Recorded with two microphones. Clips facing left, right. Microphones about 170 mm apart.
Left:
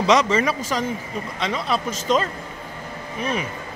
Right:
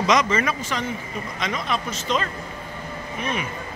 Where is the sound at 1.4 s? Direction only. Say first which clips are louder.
Left 3 dB; 30° left (ahead or behind).